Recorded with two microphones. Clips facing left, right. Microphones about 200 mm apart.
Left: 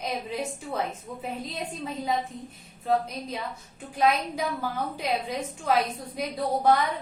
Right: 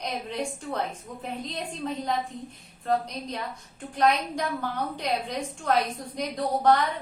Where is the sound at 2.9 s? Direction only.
5° left (ahead or behind).